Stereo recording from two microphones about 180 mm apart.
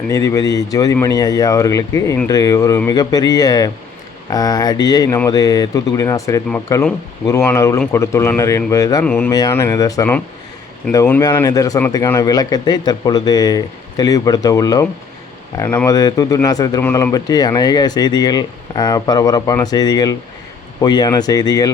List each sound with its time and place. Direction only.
0.1 s speech: 15° left (ahead or behind)
9.0 s speech: 5° left (ahead or behind)
9.3 s speech: 20° left (ahead or behind)